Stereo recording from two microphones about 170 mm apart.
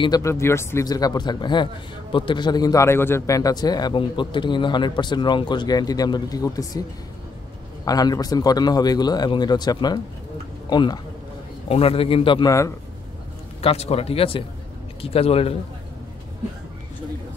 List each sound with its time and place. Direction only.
0.0 s a man's voice: 20° left (ahead or behind)
7.8 s a man's voice: 20° left (ahead or behind)
13.6 s a man's voice: 35° left (ahead or behind)